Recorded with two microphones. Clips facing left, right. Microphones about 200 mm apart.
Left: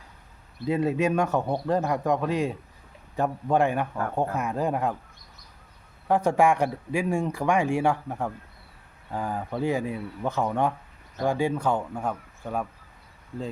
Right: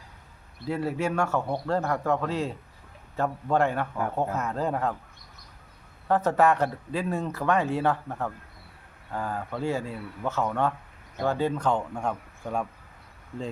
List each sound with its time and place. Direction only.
0.6 s a man's voice: 20° left (ahead or behind)
6.1 s speech: 15° left (ahead or behind)